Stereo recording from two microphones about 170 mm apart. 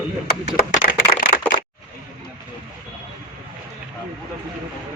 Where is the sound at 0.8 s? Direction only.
60° left (ahead or behind).